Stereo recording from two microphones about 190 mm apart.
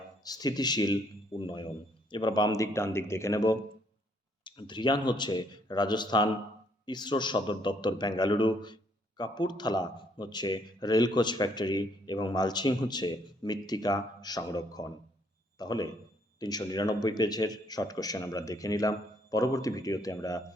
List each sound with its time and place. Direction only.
0.3 s a man's voice: 20° left (ahead or behind)